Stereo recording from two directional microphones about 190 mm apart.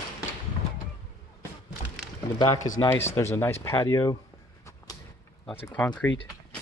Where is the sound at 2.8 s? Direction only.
15° left (ahead or behind).